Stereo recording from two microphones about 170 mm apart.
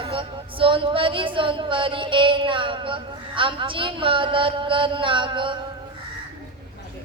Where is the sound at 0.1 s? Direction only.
30° right (ahead or behind).